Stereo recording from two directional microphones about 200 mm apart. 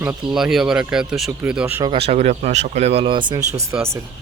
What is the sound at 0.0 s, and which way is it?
Speech, 5° right (ahead or behind).